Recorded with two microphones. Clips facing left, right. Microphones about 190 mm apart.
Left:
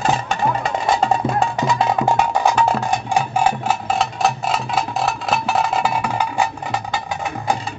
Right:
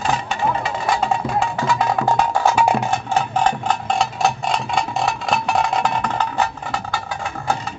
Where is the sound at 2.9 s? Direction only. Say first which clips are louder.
Left 1 dB; 10° left (ahead or behind).